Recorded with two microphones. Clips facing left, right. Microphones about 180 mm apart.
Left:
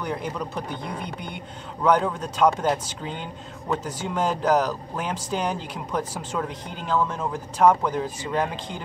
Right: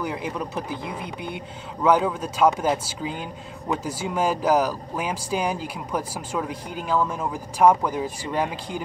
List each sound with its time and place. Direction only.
0.0 s speech: 5° right (ahead or behind)